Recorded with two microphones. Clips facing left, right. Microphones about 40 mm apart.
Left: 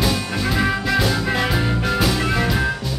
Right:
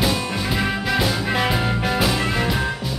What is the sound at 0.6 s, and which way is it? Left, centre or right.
Music, centre.